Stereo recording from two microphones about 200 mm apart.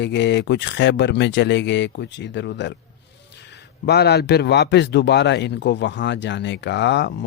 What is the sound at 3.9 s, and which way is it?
Speech, 55° left (ahead or behind).